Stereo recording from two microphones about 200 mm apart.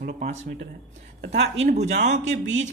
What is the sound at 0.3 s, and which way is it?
Speech, 35° right (ahead or behind).